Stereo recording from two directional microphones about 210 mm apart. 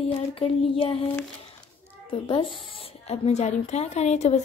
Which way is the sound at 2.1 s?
25° left (ahead or behind).